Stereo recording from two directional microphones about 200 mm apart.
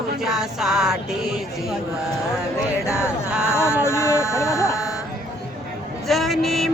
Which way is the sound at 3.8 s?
15° left (ahead or behind).